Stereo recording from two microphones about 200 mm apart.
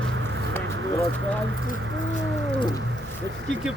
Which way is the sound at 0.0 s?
70° right (ahead or behind).